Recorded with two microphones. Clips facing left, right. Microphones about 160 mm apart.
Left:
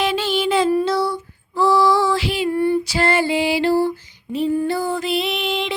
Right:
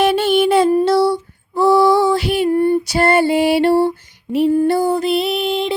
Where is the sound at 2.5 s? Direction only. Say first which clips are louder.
Right 4 dB; 45° right (ahead or behind).